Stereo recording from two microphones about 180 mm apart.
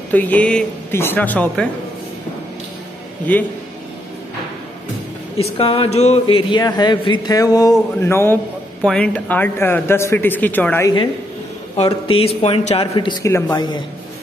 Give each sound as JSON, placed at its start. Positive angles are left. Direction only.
{"t": 0.1, "sound": "a man's voice", "side_deg": 10}
{"t": 3.3, "sound": "a man's voice", "side_deg": 10}
{"t": 5.6, "sound": "a man's voice", "side_deg": 30}
{"t": 11.7, "sound": "a man's voice", "side_deg": 30}